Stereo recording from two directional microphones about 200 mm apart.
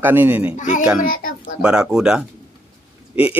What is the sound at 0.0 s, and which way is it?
Speech, 10° right (ahead or behind).